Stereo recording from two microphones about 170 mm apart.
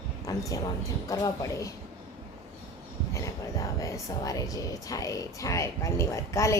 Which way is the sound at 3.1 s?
20° left (ahead or behind).